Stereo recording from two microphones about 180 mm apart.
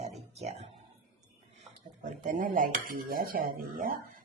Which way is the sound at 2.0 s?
45° right (ahead or behind).